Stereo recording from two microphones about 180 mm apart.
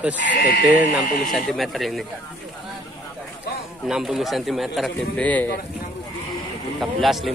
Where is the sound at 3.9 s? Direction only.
Centre (ahead or behind).